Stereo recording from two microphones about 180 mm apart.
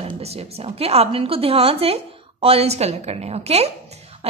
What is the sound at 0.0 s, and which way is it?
A woman's voice, 35° right (ahead or behind).